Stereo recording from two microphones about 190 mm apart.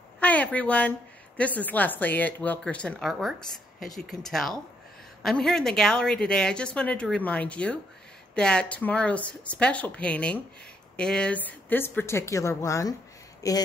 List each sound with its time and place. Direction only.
0.2 s a woman's voice: 10° left (ahead or behind)